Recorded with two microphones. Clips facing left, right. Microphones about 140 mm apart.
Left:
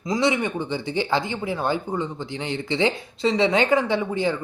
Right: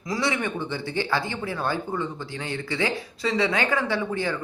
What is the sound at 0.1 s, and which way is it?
Speech, 20° left (ahead or behind).